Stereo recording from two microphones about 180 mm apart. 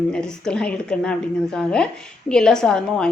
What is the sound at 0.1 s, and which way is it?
Speech, 5° left (ahead or behind).